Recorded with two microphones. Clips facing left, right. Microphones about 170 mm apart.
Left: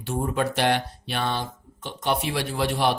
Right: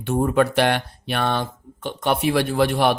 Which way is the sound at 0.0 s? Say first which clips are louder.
Right 7 dB; 60° right (ahead or behind).